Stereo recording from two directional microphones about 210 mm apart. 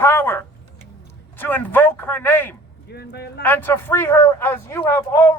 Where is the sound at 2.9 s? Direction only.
50° left (ahead or behind).